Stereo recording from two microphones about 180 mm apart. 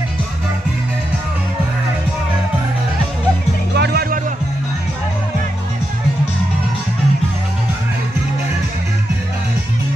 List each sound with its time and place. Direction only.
3.7 s music: 60° right (ahead or behind)